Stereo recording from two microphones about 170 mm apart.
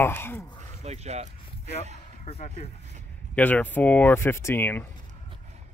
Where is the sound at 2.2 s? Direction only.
40° left (ahead or behind).